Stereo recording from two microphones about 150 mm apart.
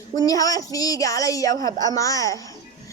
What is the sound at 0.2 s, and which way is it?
A woman's voice, 25° left (ahead or behind).